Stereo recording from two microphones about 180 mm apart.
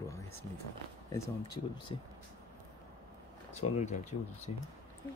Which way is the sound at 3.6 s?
40° left (ahead or behind).